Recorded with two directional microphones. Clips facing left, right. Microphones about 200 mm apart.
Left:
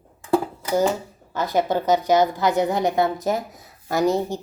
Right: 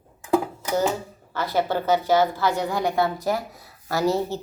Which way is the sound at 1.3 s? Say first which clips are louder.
Left 2 dB; 15° left (ahead or behind).